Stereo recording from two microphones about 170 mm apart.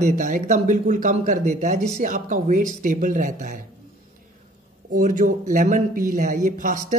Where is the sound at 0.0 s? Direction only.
50° right (ahead or behind).